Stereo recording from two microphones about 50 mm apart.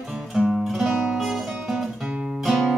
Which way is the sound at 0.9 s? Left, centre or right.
Right.